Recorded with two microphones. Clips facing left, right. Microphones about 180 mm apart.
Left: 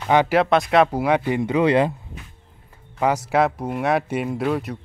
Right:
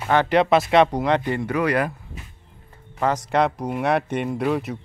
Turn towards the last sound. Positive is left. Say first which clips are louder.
# even
turn(degrees=0)  # may be behind; listen again after turning